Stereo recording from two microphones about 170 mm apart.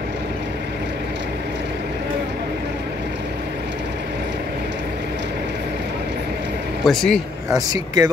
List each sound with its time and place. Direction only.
6.8 s speech: centre (ahead or behind)
7.5 s speech: 20° right (ahead or behind)